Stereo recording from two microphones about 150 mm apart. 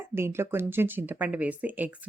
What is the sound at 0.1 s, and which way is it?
Speech, 15° right (ahead or behind).